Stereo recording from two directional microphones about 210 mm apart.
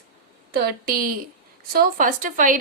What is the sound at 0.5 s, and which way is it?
A woman's voice, 45° right (ahead or behind).